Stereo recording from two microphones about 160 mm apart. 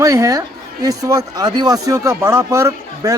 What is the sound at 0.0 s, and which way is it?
A man's voice, 20° right (ahead or behind).